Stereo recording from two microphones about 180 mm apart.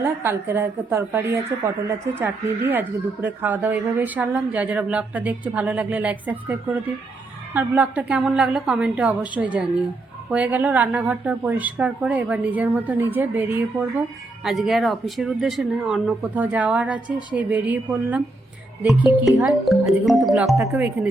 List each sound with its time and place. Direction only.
0.0 s speech: 10° right (ahead or behind)
20.6 s speech: 15° right (ahead or behind)